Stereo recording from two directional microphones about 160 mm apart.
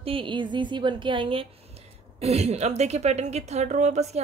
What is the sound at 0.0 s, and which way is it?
A woman's voice, 35° right (ahead or behind).